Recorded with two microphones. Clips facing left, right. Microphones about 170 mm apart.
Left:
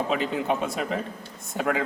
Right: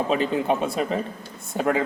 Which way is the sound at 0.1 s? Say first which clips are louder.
Right 3 dB; 35° right (ahead or behind).